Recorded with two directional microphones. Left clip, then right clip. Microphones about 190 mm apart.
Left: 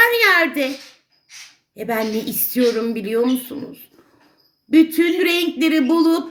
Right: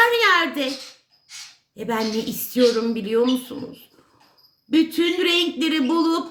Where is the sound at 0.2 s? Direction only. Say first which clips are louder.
Left 3 dB; 15° right (ahead or behind).